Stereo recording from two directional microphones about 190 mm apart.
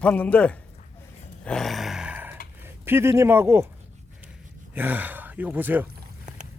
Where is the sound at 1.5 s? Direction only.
Centre (ahead or behind).